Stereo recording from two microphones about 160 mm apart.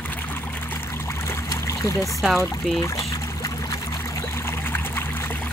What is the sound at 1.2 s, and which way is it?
Trickle, 20° left (ahead or behind).